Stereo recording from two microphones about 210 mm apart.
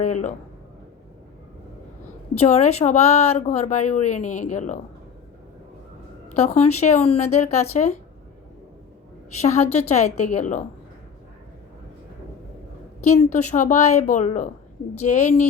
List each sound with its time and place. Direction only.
0.0 s a woman's voice: 35° left (ahead or behind)
2.4 s a woman's voice: 30° left (ahead or behind)
6.3 s a woman's voice: 30° left (ahead or behind)
9.4 s a woman's voice: 30° left (ahead or behind)
13.1 s a woman's voice: 35° left (ahead or behind)